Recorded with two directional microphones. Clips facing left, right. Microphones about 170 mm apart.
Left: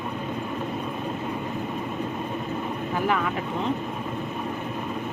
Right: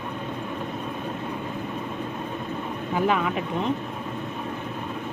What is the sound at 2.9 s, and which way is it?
Speech, 20° right (ahead or behind).